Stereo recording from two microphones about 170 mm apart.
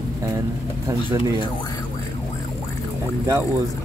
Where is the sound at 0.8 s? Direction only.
20° right (ahead or behind).